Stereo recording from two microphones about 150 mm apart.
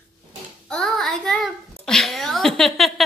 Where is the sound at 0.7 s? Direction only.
Centre (ahead or behind).